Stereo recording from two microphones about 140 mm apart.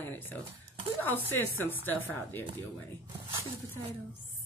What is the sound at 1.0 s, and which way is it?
Speech, 15° left (ahead or behind).